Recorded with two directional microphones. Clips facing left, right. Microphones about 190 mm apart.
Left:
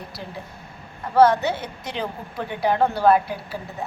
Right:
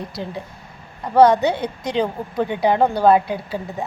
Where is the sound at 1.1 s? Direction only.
15° right (ahead or behind).